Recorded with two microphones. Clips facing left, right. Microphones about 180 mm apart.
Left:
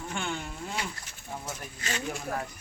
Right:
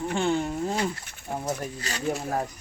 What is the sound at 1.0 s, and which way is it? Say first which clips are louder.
Speech: right 8 dB; 60° right (ahead or behind).